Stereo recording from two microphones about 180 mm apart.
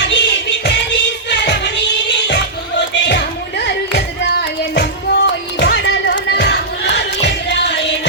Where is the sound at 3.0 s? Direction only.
70° left (ahead or behind).